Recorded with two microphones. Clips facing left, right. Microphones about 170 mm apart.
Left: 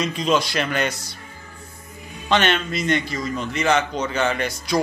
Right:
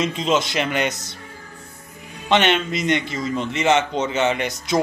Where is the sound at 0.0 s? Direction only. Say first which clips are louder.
Even; 25° right (ahead or behind).